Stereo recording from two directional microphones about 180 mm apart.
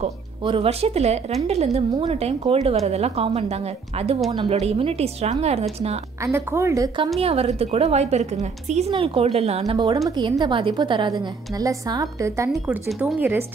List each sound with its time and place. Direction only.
0.0 s speech: 30° right (ahead or behind)
6.2 s a woman's voice: 15° right (ahead or behind)
7.2 s a woman's voice: 35° right (ahead or behind); by 13.4 s 10° right (ahead or behind)